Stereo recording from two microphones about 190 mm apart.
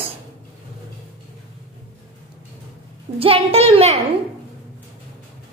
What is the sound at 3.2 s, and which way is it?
Speech, 30° right (ahead or behind).